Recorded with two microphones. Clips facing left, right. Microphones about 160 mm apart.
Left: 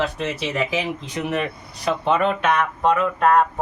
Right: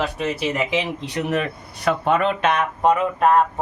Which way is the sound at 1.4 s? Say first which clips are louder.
Right 1 dB; 60° right (ahead or behind).